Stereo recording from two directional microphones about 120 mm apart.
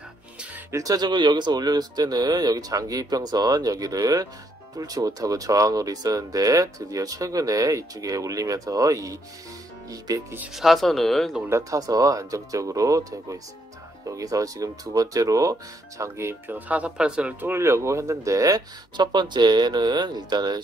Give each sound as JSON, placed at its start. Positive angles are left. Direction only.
{"t": 0.7, "sound": "speech", "side_deg": -30}
{"t": 10.5, "sound": "speech", "side_deg": 0}
{"t": 11.4, "sound": "speech", "side_deg": -25}